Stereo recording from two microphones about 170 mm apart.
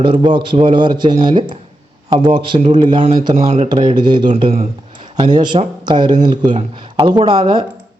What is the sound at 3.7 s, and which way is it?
A man's voice, 25° right (ahead or behind).